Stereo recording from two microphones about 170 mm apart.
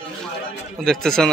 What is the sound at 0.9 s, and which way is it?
Speech, 5° left (ahead or behind).